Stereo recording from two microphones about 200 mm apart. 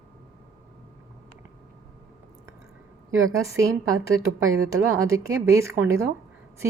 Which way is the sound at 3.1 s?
90° right.